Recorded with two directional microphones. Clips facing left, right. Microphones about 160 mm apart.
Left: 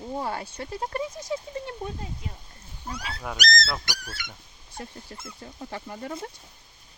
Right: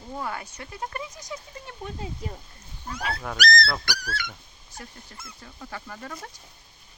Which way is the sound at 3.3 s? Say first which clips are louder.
Right 3 dB; 20° left (ahead or behind).